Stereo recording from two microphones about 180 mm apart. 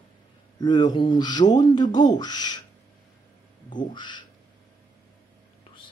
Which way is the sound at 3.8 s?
25° left (ahead or behind).